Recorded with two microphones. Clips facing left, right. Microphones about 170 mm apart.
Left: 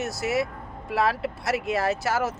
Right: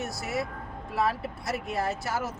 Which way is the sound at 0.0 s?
80° left.